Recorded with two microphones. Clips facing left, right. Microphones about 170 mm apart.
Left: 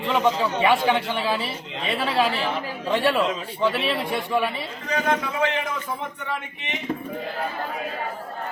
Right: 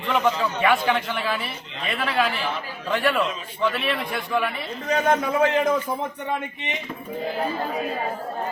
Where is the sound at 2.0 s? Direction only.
30° left (ahead or behind).